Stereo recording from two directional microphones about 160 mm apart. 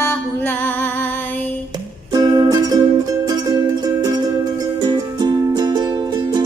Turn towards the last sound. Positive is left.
turn(degrees=-25)  # may be behind; listen again after turning